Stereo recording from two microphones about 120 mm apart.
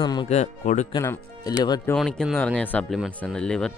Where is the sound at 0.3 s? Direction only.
70° left (ahead or behind).